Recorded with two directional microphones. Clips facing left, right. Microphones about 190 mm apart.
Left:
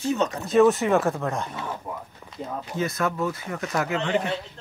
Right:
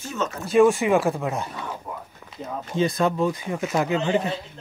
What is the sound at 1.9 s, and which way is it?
Speech, 10° left (ahead or behind).